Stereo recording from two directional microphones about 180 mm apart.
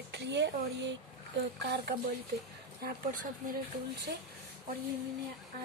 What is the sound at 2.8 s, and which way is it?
Speech, 50° right (ahead or behind).